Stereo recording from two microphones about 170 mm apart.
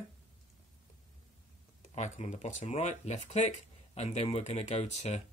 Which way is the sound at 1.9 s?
40° left (ahead or behind).